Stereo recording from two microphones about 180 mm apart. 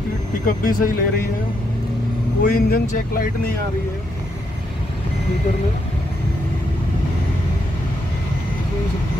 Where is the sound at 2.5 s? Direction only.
55° left (ahead or behind).